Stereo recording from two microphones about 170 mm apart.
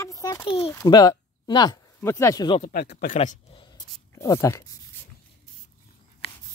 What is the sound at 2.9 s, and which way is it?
Speech, 45° left (ahead or behind).